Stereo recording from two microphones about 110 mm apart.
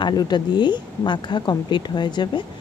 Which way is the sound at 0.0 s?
40° left (ahead or behind).